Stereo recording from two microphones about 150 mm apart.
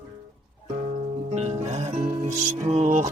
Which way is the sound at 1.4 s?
50° right (ahead or behind).